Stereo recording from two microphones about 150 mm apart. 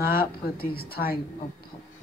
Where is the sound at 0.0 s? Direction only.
80° left.